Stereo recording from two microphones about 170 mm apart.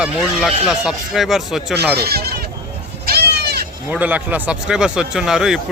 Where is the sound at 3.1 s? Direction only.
70° right (ahead or behind).